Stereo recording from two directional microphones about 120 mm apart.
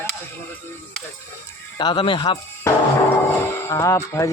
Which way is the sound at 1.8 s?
40° left (ahead or behind).